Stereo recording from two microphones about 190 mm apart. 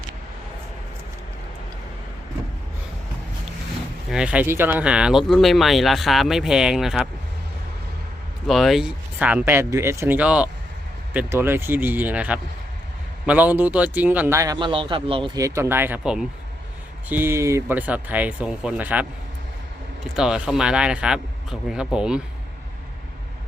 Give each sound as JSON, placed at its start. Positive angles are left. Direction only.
{"t": 4.1, "sound": "speech", "side_deg": -5}
{"t": 8.4, "sound": "speech", "side_deg": 0}
{"t": 15.4, "sound": "speech", "side_deg": -15}
{"t": 20.1, "sound": "speech", "side_deg": -5}